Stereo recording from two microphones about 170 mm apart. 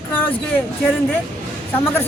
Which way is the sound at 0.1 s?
10° left (ahead or behind).